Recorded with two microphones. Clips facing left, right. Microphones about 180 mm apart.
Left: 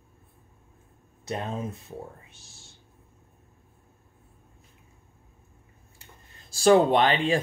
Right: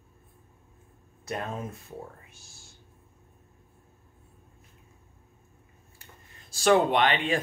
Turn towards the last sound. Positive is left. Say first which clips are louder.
# left 3 dB
turn(degrees=35)  # may be behind; listen again after turning